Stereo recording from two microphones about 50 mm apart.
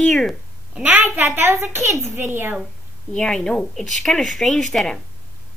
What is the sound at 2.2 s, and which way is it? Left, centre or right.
Speech, right.